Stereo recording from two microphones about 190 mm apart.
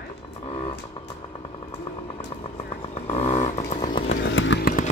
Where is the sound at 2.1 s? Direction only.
30° left (ahead or behind).